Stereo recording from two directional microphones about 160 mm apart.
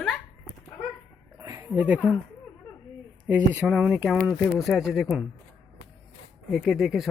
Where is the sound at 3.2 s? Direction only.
10° right (ahead or behind).